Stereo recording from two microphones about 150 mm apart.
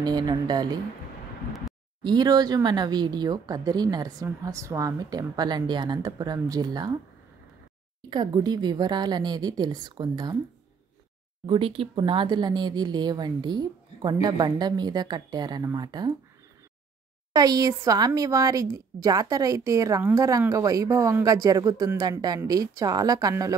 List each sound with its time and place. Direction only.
0.0 s speech: 25° right (ahead or behind)
2.0 s speech: 25° right (ahead or behind)
8.1 s speech: 25° right (ahead or behind)
11.4 s speech: 35° right (ahead or behind)
17.3 s speech: 25° right (ahead or behind)